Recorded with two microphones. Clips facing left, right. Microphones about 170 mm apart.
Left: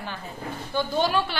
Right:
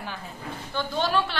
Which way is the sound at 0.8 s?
5° left (ahead or behind).